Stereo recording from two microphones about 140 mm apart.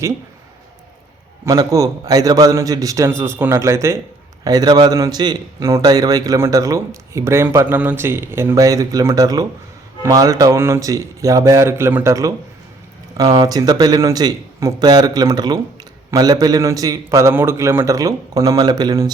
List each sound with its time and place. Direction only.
1.5 s a man's voice: 25° right (ahead or behind)